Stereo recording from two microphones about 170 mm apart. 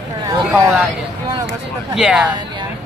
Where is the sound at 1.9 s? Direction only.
5° right (ahead or behind).